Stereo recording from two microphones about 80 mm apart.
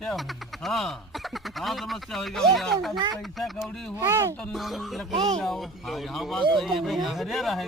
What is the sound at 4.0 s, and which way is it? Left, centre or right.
Speech, right.